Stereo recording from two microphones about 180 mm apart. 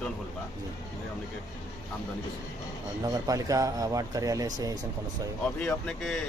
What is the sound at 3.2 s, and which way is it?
Speech, 20° right (ahead or behind).